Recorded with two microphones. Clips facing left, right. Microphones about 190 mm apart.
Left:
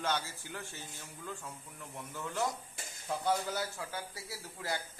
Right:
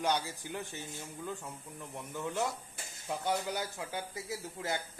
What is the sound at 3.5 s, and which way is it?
Speech, 15° right (ahead or behind).